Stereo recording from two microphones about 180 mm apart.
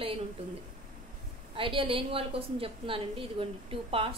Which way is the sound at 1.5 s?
30° right (ahead or behind).